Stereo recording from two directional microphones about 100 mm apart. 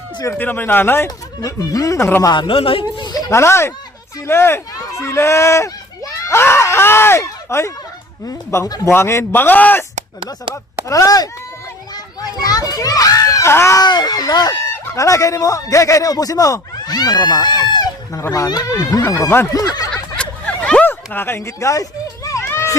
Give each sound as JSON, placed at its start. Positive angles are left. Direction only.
{"t": 0.3, "sound": "a man's voice", "side_deg": 20}
{"t": 1.4, "sound": "speech", "side_deg": 35}
{"t": 2.3, "sound": "a man's voice", "side_deg": 50}
{"t": 2.6, "sound": "speech", "side_deg": 65}
{"t": 2.9, "sound": "a man's voice", "side_deg": 45}
{"t": 6.2, "sound": "screaming", "side_deg": 25}
{"t": 8.3, "sound": "a man's voice", "side_deg": 30}
{"t": 10.8, "sound": "a child's voice", "side_deg": 35}
{"t": 13.8, "sound": "speech", "side_deg": 45}
{"t": 19.2, "sound": "a man's voice", "side_deg": 25}
{"t": 19.9, "sound": "a sound", "side_deg": 10}